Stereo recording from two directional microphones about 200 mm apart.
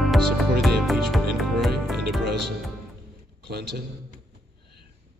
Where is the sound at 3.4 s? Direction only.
55° right (ahead or behind).